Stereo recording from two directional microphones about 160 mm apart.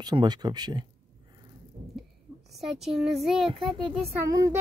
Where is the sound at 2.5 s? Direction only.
Centre (ahead or behind).